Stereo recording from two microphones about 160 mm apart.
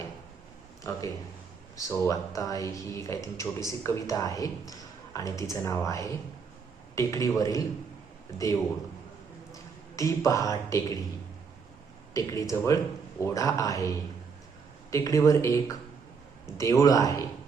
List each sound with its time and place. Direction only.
0.9 s a man's voice: 20° left (ahead or behind)
9.5 s a man's voice: 20° left (ahead or behind)
12.1 s a man's voice: 20° left (ahead or behind)